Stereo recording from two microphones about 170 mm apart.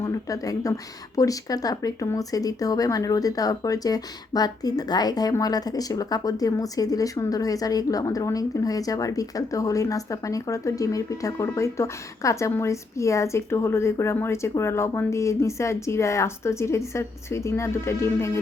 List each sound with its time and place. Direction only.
0.0 s speech: 20° left (ahead or behind)